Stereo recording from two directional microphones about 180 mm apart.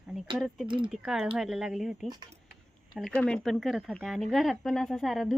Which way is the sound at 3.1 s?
5° left (ahead or behind).